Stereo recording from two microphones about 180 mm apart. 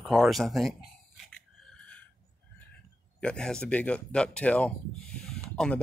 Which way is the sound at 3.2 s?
5° left (ahead or behind).